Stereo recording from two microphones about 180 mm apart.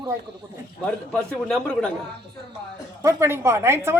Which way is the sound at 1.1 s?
5° left (ahead or behind).